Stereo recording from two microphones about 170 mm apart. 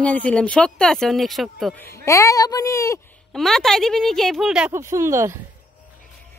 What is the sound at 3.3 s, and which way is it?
Speech, centre (ahead or behind).